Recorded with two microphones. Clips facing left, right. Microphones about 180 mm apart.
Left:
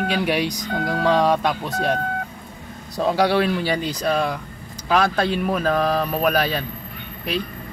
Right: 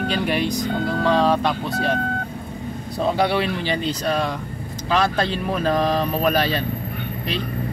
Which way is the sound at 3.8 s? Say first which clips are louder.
Left 1 dB; 5° left (ahead or behind).